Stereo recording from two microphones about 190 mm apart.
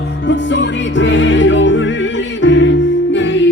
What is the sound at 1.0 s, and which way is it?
Music, 75° left (ahead or behind).